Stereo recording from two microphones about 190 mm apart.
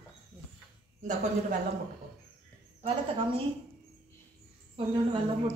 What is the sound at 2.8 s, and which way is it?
Speech, 30° right (ahead or behind).